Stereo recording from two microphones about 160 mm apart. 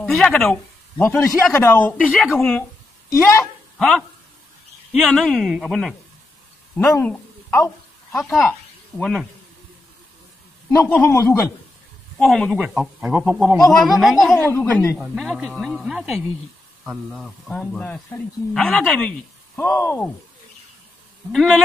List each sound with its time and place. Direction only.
0.0 s speech: centre (ahead or behind)
0.9 s speech: 15° left (ahead or behind)
2.0 s speech: centre (ahead or behind)
3.1 s speech: 15° left (ahead or behind)
3.7 s speech: 5° left (ahead or behind)
7.0 s a sound: 15° left (ahead or behind)
8.2 s speech: centre (ahead or behind)
10.7 s speech: 15° left (ahead or behind)
12.2 s speech: 5° left (ahead or behind)
14.5 s speech: 15° left (ahead or behind)
15.0 s speech: centre (ahead or behind)
17.5 s speech: 5° left (ahead or behind)
21.3 s speech: centre (ahead or behind)